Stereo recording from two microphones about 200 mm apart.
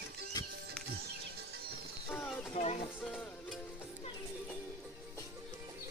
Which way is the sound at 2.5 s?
30° left (ahead or behind).